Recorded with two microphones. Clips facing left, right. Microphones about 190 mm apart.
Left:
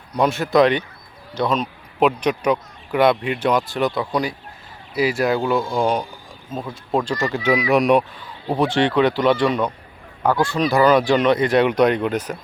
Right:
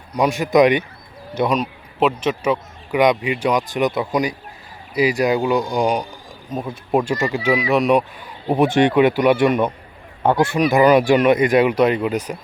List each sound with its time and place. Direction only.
0.1 s speech: 10° right (ahead or behind)
8.4 s speech: 15° right (ahead or behind)